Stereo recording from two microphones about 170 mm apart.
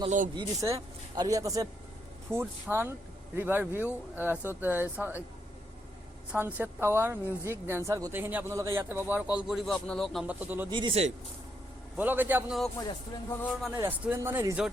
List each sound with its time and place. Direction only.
0.3 s a man's voice: 20° right (ahead or behind)
6.3 s a man's voice: 10° right (ahead or behind)
10.2 s a man's voice: 10° right (ahead or behind)
10.7 s speech: 30° right (ahead or behind)
11.9 s a man's voice: 10° right (ahead or behind)
12.7 s speech: 20° left (ahead or behind)
13.7 s a man's voice: 15° right (ahead or behind)